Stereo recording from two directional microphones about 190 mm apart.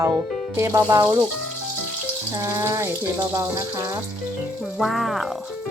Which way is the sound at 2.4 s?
15° right (ahead or behind).